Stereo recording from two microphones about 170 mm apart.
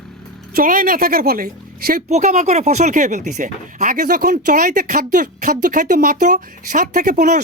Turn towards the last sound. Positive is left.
turn(degrees=-45)  # may be behind; listen again after turning